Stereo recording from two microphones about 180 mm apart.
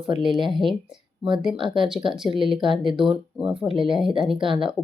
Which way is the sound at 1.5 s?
25° right (ahead or behind).